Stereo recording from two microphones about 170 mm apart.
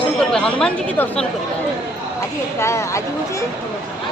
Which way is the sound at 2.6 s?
15° left (ahead or behind).